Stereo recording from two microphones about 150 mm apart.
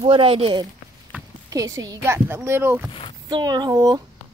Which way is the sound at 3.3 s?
25° right (ahead or behind).